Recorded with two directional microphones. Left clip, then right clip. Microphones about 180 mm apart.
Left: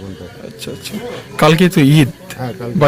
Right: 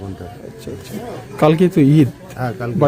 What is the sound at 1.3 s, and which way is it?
Speech, 5° right (ahead or behind).